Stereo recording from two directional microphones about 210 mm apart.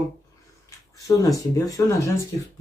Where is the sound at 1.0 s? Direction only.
15° left (ahead or behind).